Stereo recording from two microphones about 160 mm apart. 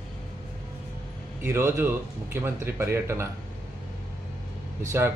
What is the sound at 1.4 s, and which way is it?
Speech, 15° right (ahead or behind).